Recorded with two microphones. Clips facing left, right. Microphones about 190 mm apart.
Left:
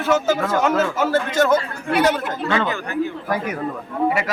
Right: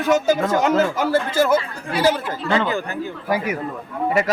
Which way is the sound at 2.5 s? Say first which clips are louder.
Right 2 dB; 30° right (ahead or behind).